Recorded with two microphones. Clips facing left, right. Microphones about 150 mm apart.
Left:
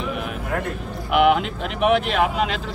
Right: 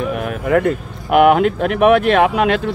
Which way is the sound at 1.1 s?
50° right (ahead or behind).